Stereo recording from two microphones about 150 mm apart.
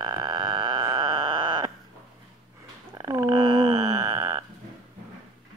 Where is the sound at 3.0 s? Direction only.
25° right (ahead or behind).